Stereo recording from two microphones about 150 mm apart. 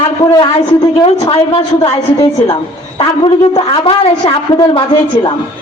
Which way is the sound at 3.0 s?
35° left (ahead or behind).